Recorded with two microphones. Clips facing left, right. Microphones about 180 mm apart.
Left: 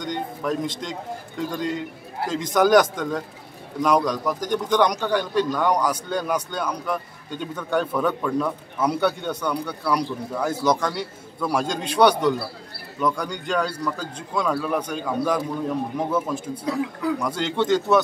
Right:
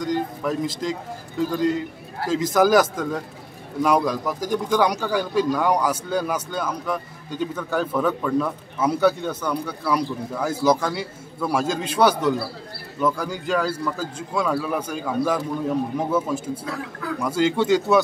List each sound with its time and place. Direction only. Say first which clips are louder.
0.0 s speech: right 3 dB; centre (ahead or behind)
16.6 s speech: left 6 dB; 20° left (ahead or behind)
17.2 s speech: right 3 dB; 5° right (ahead or behind)